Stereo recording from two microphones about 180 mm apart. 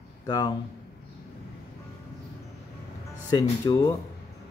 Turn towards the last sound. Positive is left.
turn(degrees=20)  # may be behind; listen again after turning